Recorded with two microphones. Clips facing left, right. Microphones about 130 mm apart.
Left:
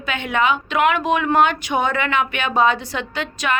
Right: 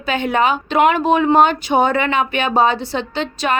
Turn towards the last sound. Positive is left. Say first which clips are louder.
# right 4 dB
turn(degrees=-30)  # may be behind; listen again after turning